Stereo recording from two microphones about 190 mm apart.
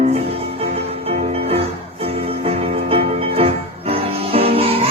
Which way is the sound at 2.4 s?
30° right (ahead or behind).